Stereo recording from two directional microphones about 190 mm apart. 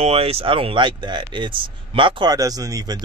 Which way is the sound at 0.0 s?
30° right (ahead or behind).